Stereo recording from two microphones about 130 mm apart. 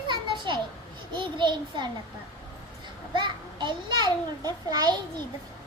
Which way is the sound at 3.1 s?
35° right (ahead or behind).